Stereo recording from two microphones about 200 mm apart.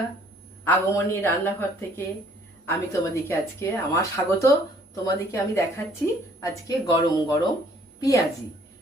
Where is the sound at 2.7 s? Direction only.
15° left (ahead or behind).